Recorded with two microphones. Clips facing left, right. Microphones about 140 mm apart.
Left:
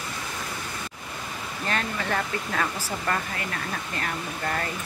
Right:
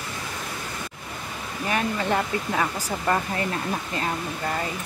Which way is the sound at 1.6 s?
15° right (ahead or behind).